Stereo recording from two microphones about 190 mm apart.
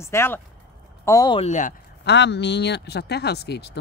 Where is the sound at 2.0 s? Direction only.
65° left (ahead or behind).